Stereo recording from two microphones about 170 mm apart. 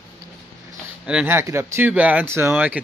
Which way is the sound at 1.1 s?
10° right (ahead or behind).